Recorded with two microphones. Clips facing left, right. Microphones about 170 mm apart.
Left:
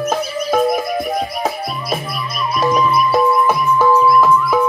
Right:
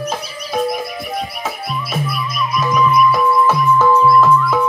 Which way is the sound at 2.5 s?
35° left (ahead or behind).